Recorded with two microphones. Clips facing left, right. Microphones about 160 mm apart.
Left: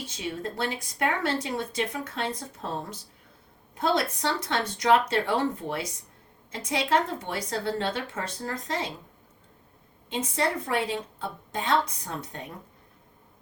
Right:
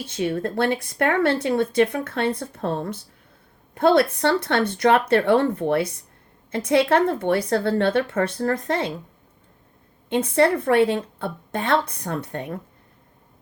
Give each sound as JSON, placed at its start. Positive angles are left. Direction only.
{"t": 0.1, "sound": "speech", "side_deg": -60}
{"t": 10.1, "sound": "speech", "side_deg": -60}